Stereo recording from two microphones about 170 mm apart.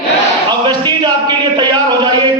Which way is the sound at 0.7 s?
25° right (ahead or behind).